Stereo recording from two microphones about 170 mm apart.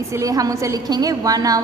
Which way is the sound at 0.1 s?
20° right (ahead or behind).